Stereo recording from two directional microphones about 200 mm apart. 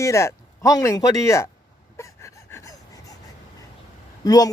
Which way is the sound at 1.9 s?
15° left (ahead or behind).